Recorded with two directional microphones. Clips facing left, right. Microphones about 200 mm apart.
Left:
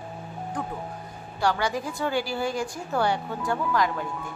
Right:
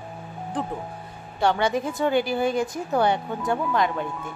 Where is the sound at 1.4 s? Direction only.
25° right (ahead or behind).